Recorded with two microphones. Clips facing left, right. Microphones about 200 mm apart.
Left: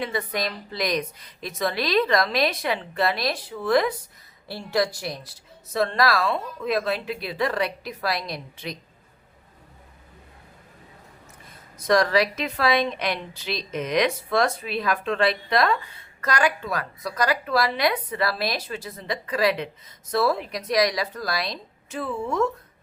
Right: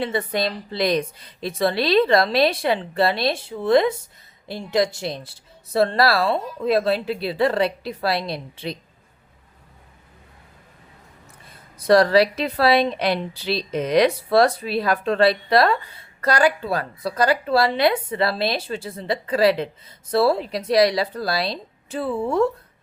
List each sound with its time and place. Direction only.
0.0 s a woman's voice: 30° right (ahead or behind)
11.8 s a woman's voice: 30° right (ahead or behind)